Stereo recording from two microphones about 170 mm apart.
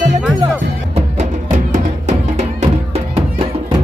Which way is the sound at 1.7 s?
45° right (ahead or behind).